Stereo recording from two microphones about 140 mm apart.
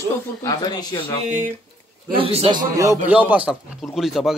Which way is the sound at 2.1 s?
40° right (ahead or behind).